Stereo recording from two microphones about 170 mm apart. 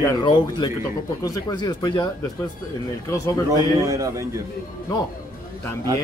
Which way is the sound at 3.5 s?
20° right (ahead or behind).